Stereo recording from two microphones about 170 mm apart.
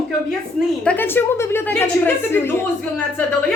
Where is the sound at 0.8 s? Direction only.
10° left (ahead or behind).